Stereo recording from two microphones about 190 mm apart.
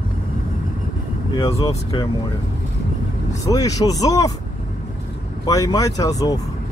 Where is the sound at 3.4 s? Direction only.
20° left (ahead or behind).